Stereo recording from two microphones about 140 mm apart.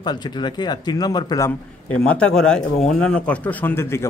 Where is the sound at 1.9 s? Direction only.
10° left (ahead or behind).